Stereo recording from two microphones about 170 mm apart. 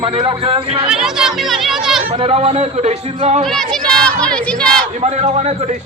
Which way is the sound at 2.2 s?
35° right (ahead or behind).